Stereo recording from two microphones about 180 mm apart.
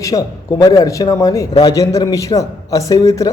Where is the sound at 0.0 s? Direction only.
20° left (ahead or behind).